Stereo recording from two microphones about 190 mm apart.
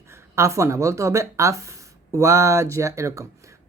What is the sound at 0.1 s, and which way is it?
A woman's voice, 15° right (ahead or behind).